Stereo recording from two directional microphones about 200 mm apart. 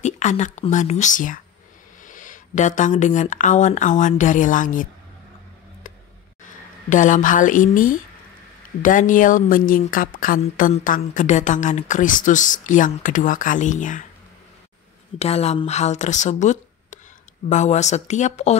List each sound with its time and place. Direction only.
0.0 s a woman's voice: 35° left (ahead or behind)
6.4 s a woman's voice: 40° left (ahead or behind)
15.1 s a woman's voice: 30° left (ahead or behind)